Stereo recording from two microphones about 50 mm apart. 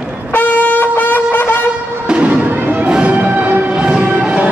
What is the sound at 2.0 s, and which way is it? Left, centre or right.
Music, right.